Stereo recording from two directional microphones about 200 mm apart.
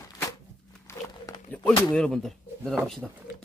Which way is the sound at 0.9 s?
10° left (ahead or behind).